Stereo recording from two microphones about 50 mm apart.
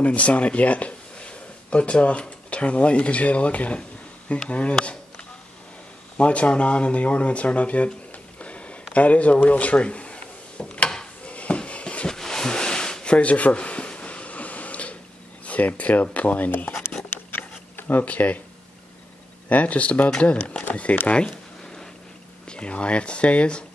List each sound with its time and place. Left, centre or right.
0.0 s speech: left
6.1 s speech: left
8.4 s a sound: left
15.4 s speech: left
17.0 s a sound: left
17.7 s speech: left
19.5 s speech: left
21.1 s a sound: centre
22.5 s speech: left